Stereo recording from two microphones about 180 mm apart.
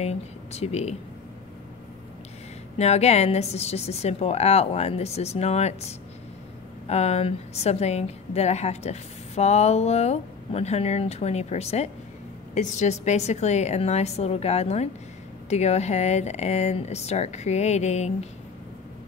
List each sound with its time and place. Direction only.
0.0 s speech: 35° left (ahead or behind)
2.8 s a woman's voice: 35° left (ahead or behind)